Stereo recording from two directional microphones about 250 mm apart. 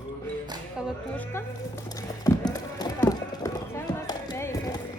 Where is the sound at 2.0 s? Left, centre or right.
Centre.